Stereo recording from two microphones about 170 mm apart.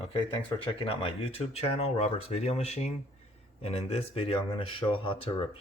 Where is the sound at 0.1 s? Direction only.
30° left (ahead or behind).